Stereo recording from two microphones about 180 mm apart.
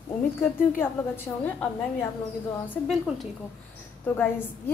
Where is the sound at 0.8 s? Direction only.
10° left (ahead or behind).